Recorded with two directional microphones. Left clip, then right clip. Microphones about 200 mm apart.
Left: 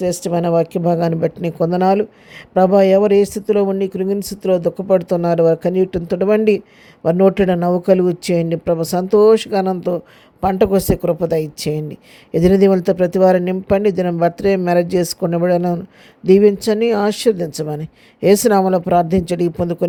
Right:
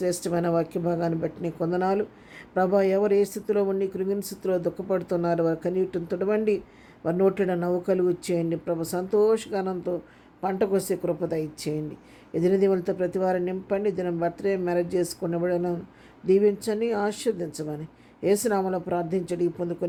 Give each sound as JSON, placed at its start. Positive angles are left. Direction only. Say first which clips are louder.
{"t": 0.0, "sound": "speech", "louder": "left 8 dB", "side_deg": 35}